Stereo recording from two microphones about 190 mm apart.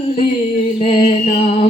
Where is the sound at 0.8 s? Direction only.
30° left (ahead or behind).